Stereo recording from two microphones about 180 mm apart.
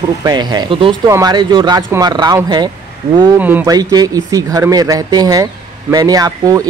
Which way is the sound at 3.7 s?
20° right (ahead or behind).